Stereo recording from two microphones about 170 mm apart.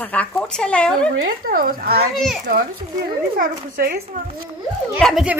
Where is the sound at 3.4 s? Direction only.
60° right (ahead or behind).